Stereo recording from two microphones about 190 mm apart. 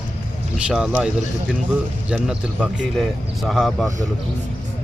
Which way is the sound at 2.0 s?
5° right (ahead or behind).